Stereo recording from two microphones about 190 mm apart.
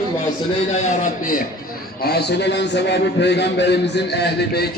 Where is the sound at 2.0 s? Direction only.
60° left (ahead or behind).